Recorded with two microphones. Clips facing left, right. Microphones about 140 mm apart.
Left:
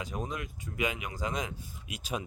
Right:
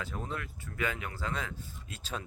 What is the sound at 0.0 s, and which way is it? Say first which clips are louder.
Speech: left 2 dB; 15° left (ahead or behind).